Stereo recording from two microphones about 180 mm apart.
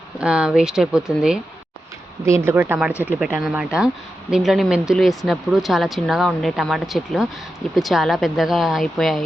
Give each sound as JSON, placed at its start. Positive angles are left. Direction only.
{"t": 0.2, "sound": "speech", "side_deg": -5}
{"t": 2.2, "sound": "speech", "side_deg": -15}